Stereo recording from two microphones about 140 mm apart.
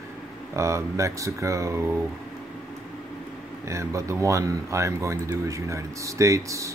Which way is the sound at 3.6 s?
20° right (ahead or behind).